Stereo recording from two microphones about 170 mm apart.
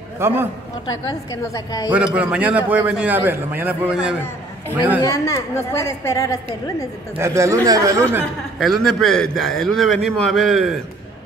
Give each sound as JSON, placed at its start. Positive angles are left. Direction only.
{"t": 0.2, "sound": "a man's voice", "side_deg": -15}
{"t": 0.8, "sound": "a woman's voice", "side_deg": 25}
{"t": 2.1, "sound": "a man's voice", "side_deg": -10}
{"t": 5.0, "sound": "a woman's voice", "side_deg": 20}
{"t": 7.2, "sound": "a man's voice", "side_deg": -15}
{"t": 8.5, "sound": "a man's voice", "side_deg": 0}